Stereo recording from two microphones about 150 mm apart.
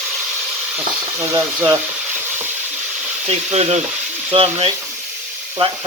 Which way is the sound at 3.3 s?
45° right (ahead or behind).